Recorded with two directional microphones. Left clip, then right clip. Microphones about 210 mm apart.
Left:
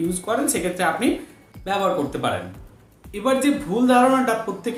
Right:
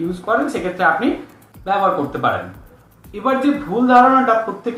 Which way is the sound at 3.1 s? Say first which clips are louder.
Right 3 dB; 25° left (ahead or behind).